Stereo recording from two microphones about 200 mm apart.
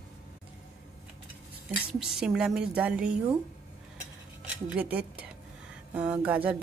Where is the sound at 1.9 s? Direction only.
5° right (ahead or behind).